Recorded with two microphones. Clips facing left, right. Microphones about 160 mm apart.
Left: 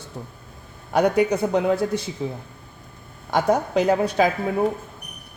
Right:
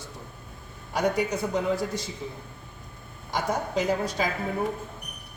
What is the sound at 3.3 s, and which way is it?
Speech, 60° left (ahead or behind).